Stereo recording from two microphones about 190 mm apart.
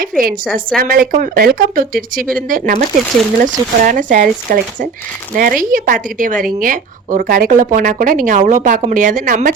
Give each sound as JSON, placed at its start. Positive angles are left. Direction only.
{"t": 0.0, "sound": "speech", "side_deg": -50}